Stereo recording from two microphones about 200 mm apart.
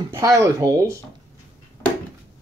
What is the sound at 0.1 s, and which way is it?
Speech, 15° right (ahead or behind).